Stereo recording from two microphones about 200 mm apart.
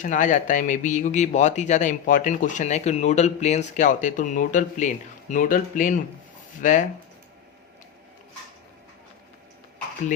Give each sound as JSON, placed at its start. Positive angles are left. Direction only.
{"t": 0.0, "sound": "speech", "side_deg": 40}